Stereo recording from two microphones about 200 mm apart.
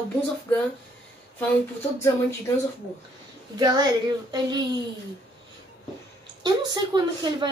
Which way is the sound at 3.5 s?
20° right (ahead or behind).